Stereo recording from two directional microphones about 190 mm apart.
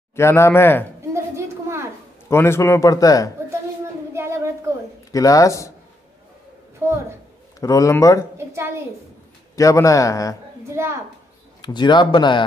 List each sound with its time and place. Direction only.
0.1 s a man's voice: 15° left (ahead or behind)
1.1 s a sound: 15° right (ahead or behind)
2.2 s a man's voice: 15° left (ahead or behind)
4.1 s child singing: 15° right (ahead or behind)
5.1 s a man's voice: 15° left (ahead or behind)
6.8 s a woman's voice: 15° right (ahead or behind)
7.6 s a man's voice: 15° left (ahead or behind)
8.4 s a woman's voice: 15° right (ahead or behind)
9.6 s a man's voice: 15° left (ahead or behind)
10.7 s a child's voice: 15° right (ahead or behind)
11.6 s speech: 20° left (ahead or behind)